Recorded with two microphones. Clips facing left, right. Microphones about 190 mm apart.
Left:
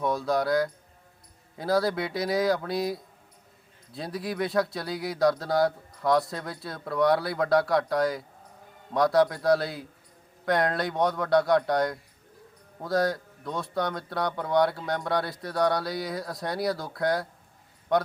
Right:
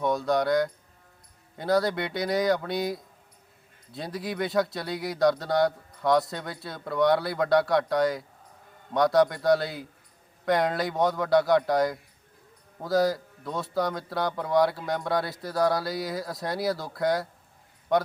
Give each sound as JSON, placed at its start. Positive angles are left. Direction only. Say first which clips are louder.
{"t": 0.0, "sound": "a man's voice", "louder": "right 1 dB", "side_deg": 0}